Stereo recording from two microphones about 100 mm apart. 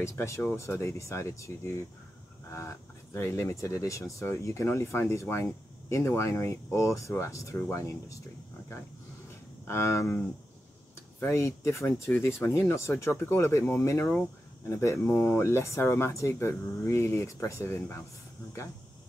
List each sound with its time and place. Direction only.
0.0 s speech: 30° left (ahead or behind)
9.7 s speech: 30° left (ahead or behind)
11.1 s speech: 30° left (ahead or behind)